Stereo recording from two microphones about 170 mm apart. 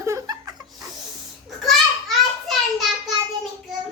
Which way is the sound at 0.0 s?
20° right (ahead or behind).